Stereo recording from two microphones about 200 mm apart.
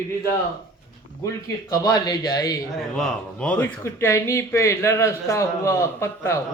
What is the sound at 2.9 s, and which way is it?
Speech, 5° left (ahead or behind).